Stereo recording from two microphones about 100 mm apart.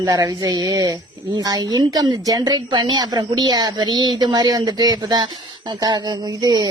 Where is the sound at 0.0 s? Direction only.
40° right (ahead or behind).